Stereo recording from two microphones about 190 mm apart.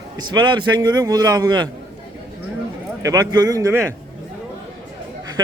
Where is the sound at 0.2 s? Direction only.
25° right (ahead or behind).